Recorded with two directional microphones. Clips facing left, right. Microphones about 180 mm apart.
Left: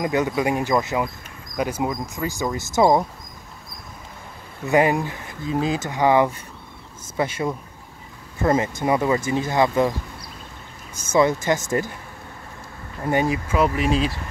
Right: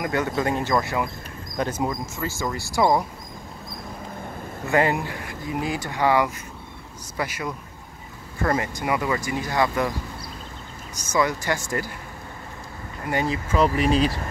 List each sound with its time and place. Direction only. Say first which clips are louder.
0.0 s speech: left 3 dB; 20° left (ahead or behind)
4.6 s speech: left 3 dB; 20° left (ahead or behind)
11.1 s speech: left 5 dB; 25° left (ahead or behind)
13.1 s speech: left 3 dB; 15° left (ahead or behind); by 14.1 s centre (ahead or behind)